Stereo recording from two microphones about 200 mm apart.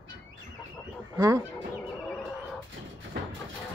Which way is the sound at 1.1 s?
20° right (ahead or behind).